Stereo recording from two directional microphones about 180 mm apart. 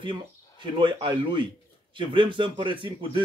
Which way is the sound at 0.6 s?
25° right (ahead or behind).